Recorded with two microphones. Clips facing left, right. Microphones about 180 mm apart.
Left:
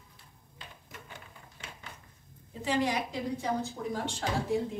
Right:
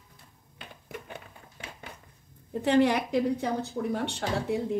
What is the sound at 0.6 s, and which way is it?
Typewriter, 60° right (ahead or behind).